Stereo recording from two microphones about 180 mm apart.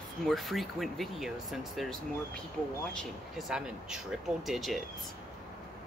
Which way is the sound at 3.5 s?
5° right (ahead or behind).